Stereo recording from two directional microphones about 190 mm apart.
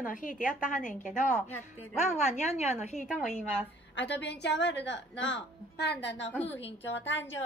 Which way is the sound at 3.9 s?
65° left (ahead or behind).